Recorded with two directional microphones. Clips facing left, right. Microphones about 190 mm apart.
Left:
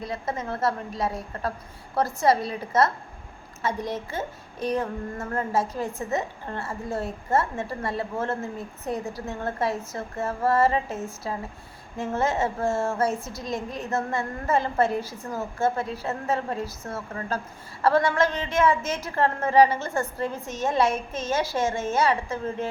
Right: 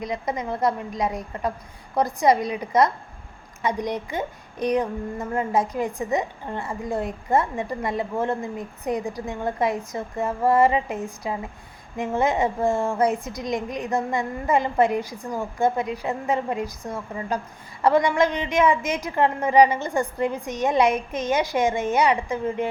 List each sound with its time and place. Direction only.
0.0 s a woman's voice: 15° right (ahead or behind)